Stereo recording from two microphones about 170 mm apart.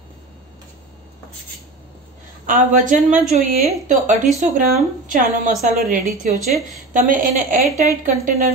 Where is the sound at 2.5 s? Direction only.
50° right (ahead or behind).